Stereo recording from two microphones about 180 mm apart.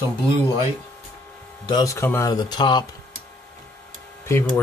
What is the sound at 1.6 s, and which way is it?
Speech, 20° left (ahead or behind).